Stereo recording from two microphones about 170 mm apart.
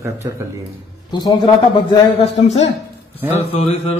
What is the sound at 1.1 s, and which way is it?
A man's voice, 25° left (ahead or behind).